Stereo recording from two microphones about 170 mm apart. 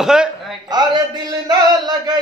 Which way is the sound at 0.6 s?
25° right (ahead or behind).